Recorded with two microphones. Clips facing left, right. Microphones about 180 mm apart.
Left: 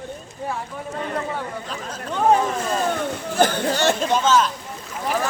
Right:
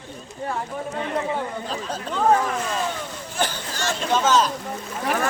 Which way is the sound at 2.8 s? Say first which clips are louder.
Left 6 dB; 50° left (ahead or behind).